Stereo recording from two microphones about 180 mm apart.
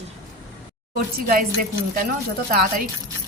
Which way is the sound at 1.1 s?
50° right (ahead or behind).